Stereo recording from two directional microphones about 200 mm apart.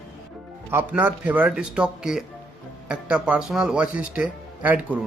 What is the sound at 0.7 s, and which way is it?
Speech, 10° right (ahead or behind).